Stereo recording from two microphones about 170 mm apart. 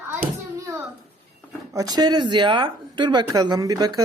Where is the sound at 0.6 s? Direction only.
15° right (ahead or behind).